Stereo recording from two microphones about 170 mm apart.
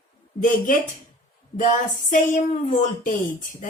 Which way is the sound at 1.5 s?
50° left (ahead or behind).